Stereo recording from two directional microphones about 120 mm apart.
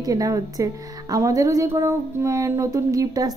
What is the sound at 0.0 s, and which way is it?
Speech, 30° right (ahead or behind).